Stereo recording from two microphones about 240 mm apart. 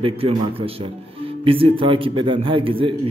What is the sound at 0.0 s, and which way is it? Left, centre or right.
A man's voice, right.